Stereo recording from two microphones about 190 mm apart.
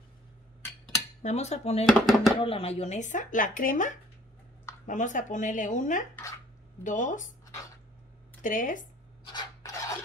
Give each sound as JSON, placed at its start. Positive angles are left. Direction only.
{"t": 1.2, "sound": "speech", "side_deg": 35}
{"t": 2.0, "sound": "speech", "side_deg": 0}
{"t": 2.4, "sound": "speech", "side_deg": 30}
{"t": 8.4, "sound": "speech", "side_deg": 45}
{"t": 9.2, "sound": "filing", "side_deg": 25}